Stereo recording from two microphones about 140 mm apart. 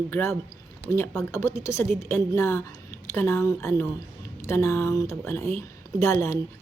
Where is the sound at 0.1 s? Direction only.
15° left (ahead or behind).